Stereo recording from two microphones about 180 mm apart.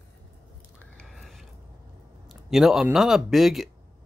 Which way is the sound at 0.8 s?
5° left (ahead or behind).